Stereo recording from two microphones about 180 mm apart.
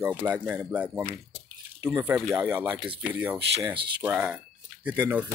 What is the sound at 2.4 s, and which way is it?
Speech, 25° right (ahead or behind).